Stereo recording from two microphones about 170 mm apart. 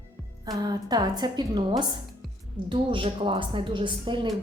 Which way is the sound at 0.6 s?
25° right (ahead or behind).